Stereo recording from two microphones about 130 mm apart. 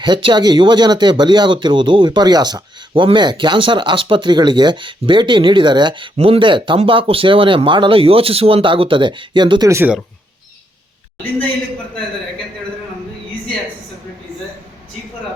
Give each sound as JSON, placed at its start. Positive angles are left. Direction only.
{"t": 0.0, "sound": "speech", "side_deg": -40}
{"t": 6.1, "sound": "speech", "side_deg": -50}